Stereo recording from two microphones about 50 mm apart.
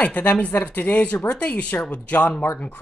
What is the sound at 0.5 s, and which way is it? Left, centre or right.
Speech, left.